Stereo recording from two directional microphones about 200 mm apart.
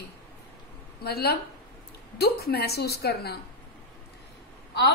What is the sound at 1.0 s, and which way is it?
A woman's voice, 50° left (ahead or behind).